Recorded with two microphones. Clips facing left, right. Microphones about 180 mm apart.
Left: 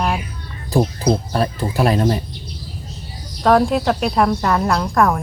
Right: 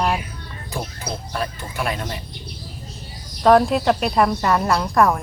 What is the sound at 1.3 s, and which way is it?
Speech, 35° left (ahead or behind).